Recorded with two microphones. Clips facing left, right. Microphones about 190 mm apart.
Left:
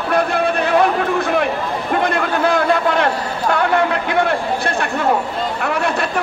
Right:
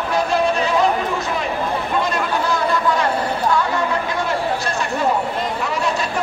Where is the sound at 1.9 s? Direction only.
60° left (ahead or behind).